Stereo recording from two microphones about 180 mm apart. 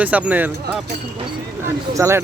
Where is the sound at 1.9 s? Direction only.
15° right (ahead or behind).